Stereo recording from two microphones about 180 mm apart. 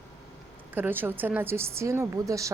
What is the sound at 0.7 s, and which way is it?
Speech, 10° right (ahead or behind).